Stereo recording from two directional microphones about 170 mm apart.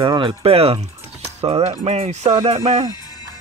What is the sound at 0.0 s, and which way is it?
Speech, 30° right (ahead or behind).